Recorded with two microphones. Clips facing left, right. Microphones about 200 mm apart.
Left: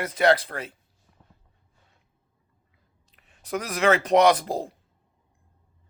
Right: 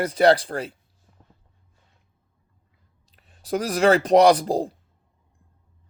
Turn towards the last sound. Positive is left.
turn(degrees=-35)  # may be behind; listen again after turning